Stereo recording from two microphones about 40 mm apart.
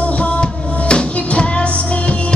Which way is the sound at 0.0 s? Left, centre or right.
Left.